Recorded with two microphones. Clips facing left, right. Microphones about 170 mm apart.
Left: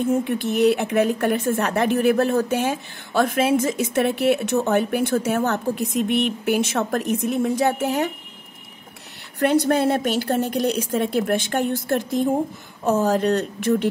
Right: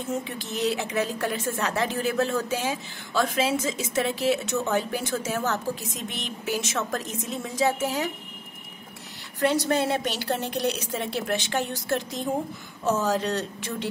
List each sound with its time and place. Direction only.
0.0 s speech: 55° left (ahead or behind)
9.4 s a woman's voice: 55° left (ahead or behind)